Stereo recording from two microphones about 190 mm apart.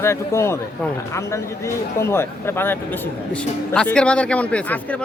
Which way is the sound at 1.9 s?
15° left (ahead or behind).